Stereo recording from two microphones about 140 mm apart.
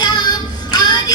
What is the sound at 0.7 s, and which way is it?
Music, 30° left (ahead or behind).